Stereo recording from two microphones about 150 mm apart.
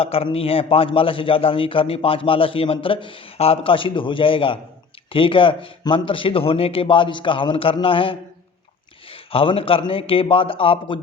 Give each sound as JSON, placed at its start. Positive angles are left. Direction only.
{"t": 0.0, "sound": "a man's voice", "side_deg": 40}